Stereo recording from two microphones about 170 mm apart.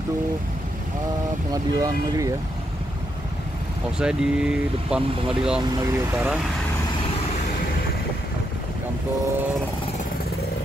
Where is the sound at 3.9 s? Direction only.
5° right (ahead or behind).